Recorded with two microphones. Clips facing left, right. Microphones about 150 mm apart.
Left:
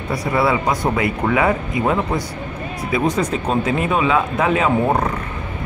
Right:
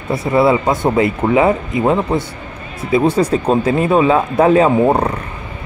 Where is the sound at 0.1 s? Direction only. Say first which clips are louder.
Right 5 dB; 25° right (ahead or behind).